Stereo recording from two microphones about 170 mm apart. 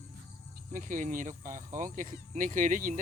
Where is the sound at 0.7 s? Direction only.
50° right (ahead or behind).